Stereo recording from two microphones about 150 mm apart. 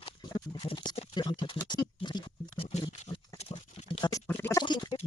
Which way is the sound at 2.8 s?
25° left (ahead or behind).